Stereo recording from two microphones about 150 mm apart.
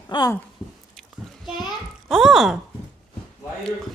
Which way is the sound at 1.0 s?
Centre (ahead or behind).